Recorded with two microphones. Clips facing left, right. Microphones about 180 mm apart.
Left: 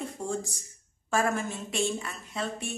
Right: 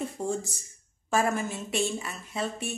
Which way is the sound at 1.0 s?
5° right (ahead or behind).